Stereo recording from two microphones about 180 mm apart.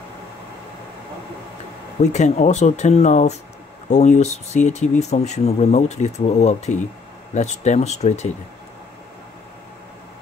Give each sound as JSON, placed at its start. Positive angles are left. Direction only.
{"t": 2.0, "sound": "speech", "side_deg": 40}